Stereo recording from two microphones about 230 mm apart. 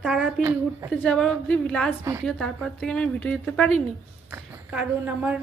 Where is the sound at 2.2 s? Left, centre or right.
Centre.